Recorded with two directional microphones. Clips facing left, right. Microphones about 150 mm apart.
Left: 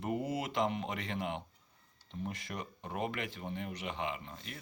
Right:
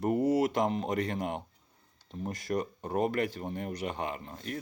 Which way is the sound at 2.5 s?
40° right (ahead or behind).